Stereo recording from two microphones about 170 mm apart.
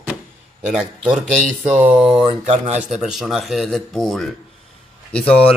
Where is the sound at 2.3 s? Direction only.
45° right (ahead or behind).